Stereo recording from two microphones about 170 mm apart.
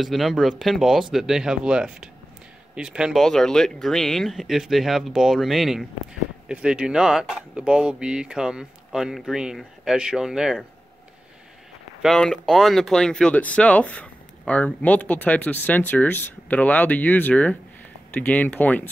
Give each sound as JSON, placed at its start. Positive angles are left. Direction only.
{"t": 0.0, "sound": "speech", "side_deg": 0}
{"t": 12.0, "sound": "speech", "side_deg": 0}